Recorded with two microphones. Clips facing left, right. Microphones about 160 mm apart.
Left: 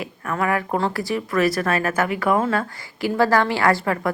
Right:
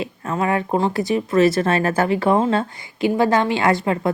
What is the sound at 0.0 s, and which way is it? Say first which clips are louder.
Speech: right 2 dB; 25° right (ahead or behind).